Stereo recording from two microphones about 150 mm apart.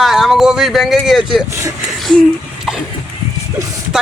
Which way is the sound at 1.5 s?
20° right (ahead or behind).